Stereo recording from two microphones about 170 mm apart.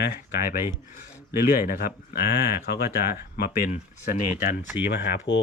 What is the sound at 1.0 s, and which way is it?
Speech, 60° left (ahead or behind).